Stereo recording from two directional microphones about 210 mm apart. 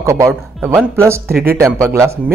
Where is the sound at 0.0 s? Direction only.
15° right (ahead or behind).